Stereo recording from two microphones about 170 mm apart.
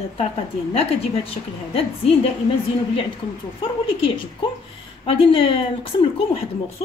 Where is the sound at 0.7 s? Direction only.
35° left (ahead or behind).